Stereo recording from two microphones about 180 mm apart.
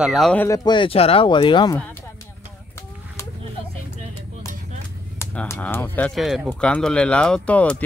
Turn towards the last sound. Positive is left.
turn(degrees=10)  # may be behind; listen again after turning